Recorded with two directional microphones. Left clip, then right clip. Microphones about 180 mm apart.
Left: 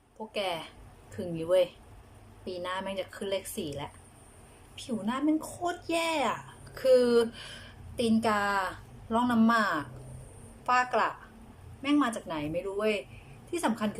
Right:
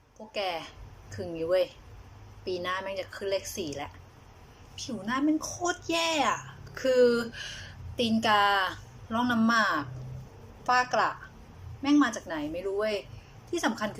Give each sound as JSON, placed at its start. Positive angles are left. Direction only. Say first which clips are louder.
{"t": 0.3, "sound": "a woman's voice", "louder": "right 1 dB", "side_deg": 10}